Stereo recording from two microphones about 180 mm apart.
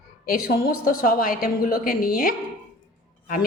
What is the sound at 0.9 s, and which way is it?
A woman's voice, 50° left (ahead or behind).